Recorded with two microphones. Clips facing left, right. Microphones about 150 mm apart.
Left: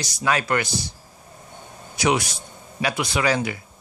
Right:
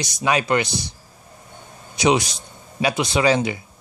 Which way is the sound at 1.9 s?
20° right (ahead or behind).